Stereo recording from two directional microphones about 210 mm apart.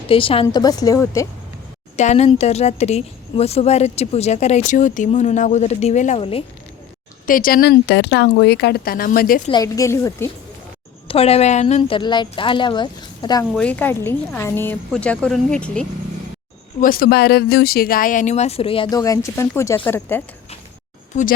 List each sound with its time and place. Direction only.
0.1 s speech: 25° left (ahead or behind)
2.0 s a woman's voice: 30° left (ahead or behind)
7.3 s a woman's voice: 40° left (ahead or behind)
9.5 s speech: 15° left (ahead or behind)
11.1 s speech: 30° left (ahead or behind)
13.5 s speech: 5° left (ahead or behind)
16.8 s a woman's voice: 45° left (ahead or behind); by 20.2 s 10° left (ahead or behind)